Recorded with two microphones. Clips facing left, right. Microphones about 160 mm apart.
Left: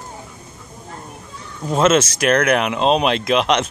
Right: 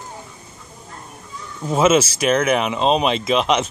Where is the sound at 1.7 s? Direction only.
5° right (ahead or behind).